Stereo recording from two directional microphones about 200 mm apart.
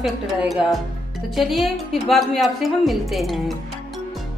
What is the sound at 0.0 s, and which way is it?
A woman's voice, 5° right (ahead or behind).